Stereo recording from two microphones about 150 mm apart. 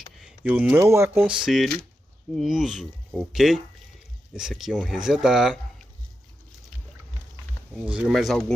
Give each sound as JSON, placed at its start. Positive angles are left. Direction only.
{"t": 0.2, "sound": "speech", "side_deg": -10}
{"t": 1.2, "sound": "speech", "side_deg": -5}
{"t": 7.8, "sound": "speech", "side_deg": -5}